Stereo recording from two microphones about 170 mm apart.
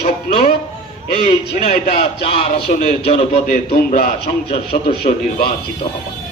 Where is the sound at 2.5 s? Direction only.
65° left (ahead or behind).